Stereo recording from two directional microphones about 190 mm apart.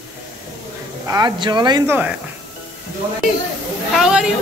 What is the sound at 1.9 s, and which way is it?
Speech, 10° right (ahead or behind).